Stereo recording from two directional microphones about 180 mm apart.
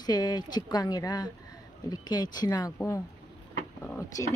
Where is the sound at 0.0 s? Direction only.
20° left (ahead or behind).